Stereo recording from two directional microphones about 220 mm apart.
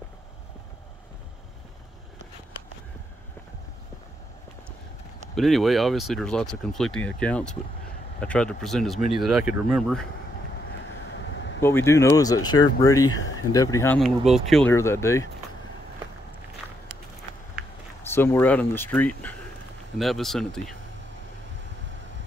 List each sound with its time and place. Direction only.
5.3 s speech: centre (ahead or behind)
11.1 s vehicle: 55° left (ahead or behind)
11.6 s speech: 10° left (ahead or behind)
13.9 s speech: centre (ahead or behind)
18.0 s speech: 10° left (ahead or behind)